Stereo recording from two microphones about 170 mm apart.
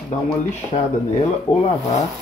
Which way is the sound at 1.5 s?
35° left (ahead or behind).